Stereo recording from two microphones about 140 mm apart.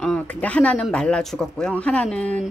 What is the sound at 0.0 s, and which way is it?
Speech, 5° left (ahead or behind).